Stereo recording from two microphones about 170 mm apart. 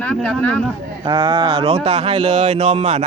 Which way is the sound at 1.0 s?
30° right (ahead or behind).